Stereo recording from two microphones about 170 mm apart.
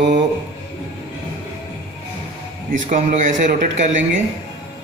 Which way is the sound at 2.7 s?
50° right (ahead or behind).